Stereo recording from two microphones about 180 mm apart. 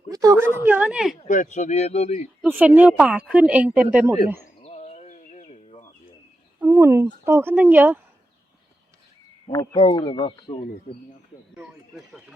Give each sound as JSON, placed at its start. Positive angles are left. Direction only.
{"t": 0.1, "sound": "a woman's voice", "side_deg": -20}
{"t": 1.2, "sound": "speech", "side_deg": 45}
{"t": 2.4, "sound": "a woman's voice", "side_deg": -10}
{"t": 4.6, "sound": "bird", "side_deg": 40}
{"t": 6.6, "sound": "a woman's voice", "side_deg": -15}
{"t": 9.5, "sound": "speech", "side_deg": 25}
{"t": 11.5, "sound": "speech", "side_deg": -5}